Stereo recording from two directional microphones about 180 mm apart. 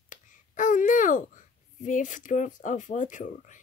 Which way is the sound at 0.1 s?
45° left (ahead or behind).